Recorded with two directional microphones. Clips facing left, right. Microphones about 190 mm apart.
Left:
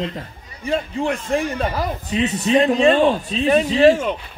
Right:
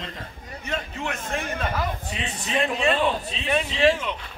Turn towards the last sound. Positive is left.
turn(degrees=45)  # may be behind; listen again after turning